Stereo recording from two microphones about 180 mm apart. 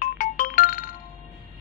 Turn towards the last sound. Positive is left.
turn(degrees=50)  # may be behind; listen again after turning